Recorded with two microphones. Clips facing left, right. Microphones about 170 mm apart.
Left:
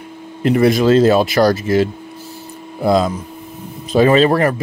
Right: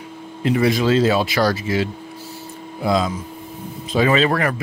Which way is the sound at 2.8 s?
55° left (ahead or behind).